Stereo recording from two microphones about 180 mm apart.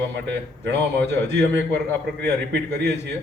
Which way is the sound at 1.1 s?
70° right (ahead or behind).